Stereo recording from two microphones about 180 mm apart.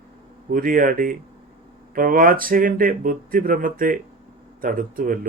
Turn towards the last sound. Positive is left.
turn(degrees=-50)  # may be behind; listen again after turning